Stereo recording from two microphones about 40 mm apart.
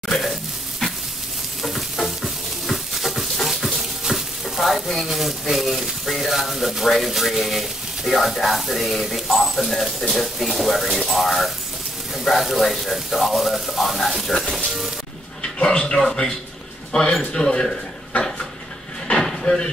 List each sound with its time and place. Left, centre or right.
0.1 s sizzle: centre
1.6 s stir: centre
2.7 s dog: centre
4.0 s frying: centre
5.0 s speech: centre
14.3 s sizzle: centre
15.6 s speech: left
17.2 s speech: centre
19.0 s a sound: centre